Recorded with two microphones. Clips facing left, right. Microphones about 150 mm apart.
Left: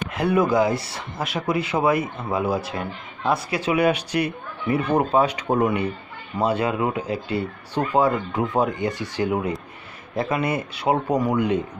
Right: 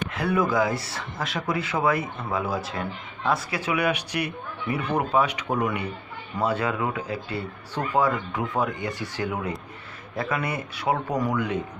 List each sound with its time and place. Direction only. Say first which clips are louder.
0.1 s speech: left 5 dB; 20° left (ahead or behind)